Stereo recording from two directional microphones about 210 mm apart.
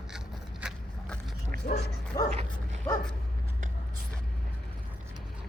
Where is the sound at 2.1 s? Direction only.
15° left (ahead or behind).